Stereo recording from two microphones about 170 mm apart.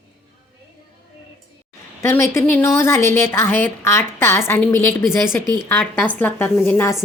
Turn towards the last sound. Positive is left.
turn(degrees=10)  # may be behind; listen again after turning